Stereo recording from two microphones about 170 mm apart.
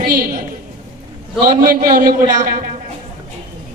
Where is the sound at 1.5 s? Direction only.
55° right (ahead or behind).